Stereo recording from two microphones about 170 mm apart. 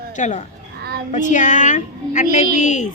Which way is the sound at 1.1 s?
45° left (ahead or behind).